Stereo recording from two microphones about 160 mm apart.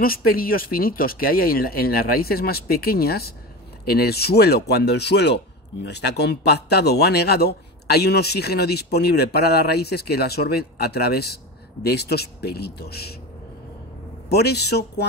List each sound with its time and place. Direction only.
0.0 s speech: 65° left (ahead or behind); by 13.1 s 80° left
14.3 s speech: 90° left